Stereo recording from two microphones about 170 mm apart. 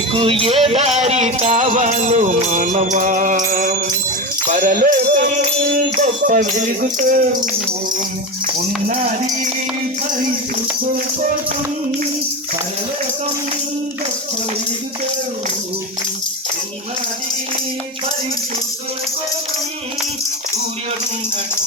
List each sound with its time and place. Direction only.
0.1 s music: 30° right (ahead or behind); by 5.2 s 55° right (ahead or behind)
6.2 s music: 50° right (ahead or behind)
8.9 s music: 50° right (ahead or behind)